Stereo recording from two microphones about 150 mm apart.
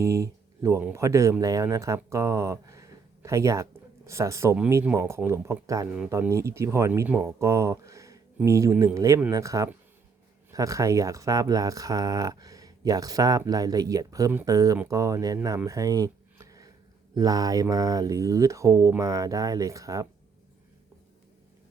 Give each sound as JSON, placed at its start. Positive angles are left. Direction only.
{"t": 0.0, "sound": "speech", "side_deg": -20}
{"t": 15.4, "sound": "a sound", "side_deg": -20}
{"t": 17.2, "sound": "speech", "side_deg": -25}